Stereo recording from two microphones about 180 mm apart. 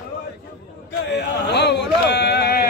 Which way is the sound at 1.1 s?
70° left (ahead or behind).